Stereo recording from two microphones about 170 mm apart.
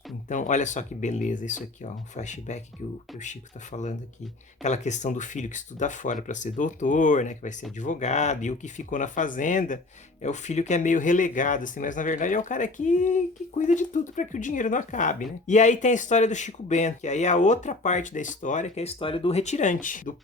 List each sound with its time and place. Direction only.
0.3 s speech: 45° left (ahead or behind)